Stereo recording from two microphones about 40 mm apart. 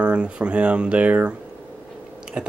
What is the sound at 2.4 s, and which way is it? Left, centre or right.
Chewing, right.